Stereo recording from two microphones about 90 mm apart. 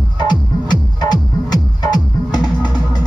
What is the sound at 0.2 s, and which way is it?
Music, 55° left (ahead or behind).